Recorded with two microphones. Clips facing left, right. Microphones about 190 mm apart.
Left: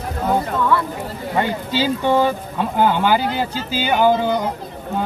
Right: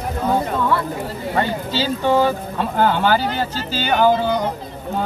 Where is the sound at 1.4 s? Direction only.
15° left (ahead or behind).